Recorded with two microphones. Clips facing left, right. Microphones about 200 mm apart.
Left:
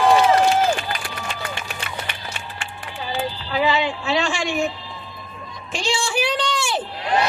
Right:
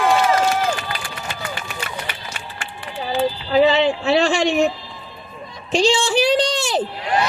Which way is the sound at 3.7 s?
40° right (ahead or behind).